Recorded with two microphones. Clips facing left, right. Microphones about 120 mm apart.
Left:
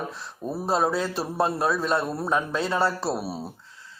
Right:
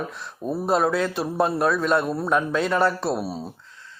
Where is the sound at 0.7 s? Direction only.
25° left (ahead or behind).